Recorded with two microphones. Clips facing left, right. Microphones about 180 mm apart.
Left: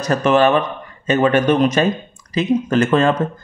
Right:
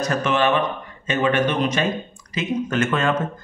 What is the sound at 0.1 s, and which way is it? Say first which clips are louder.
Speech: left 8 dB; 40° left (ahead or behind).